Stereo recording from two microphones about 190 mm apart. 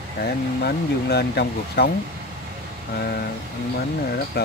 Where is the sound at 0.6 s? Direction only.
60° left (ahead or behind).